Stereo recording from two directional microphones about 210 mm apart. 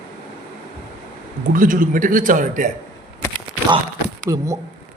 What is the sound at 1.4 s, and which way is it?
A man's voice, 40° right (ahead or behind).